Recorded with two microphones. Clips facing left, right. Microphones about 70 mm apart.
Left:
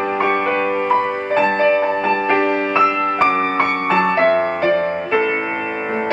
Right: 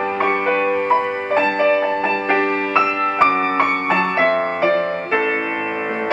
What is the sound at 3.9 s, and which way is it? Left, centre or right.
Music, centre.